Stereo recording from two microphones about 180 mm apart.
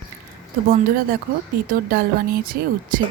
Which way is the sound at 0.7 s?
55° right (ahead or behind).